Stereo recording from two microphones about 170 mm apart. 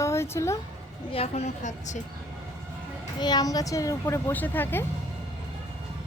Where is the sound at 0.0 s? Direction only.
15° left (ahead or behind).